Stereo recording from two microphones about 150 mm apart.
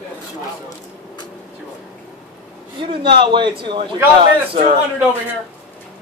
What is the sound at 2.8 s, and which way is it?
A man's voice, 35° right (ahead or behind).